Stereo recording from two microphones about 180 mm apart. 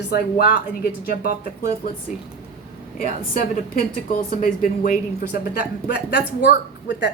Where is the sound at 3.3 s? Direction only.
45° left (ahead or behind).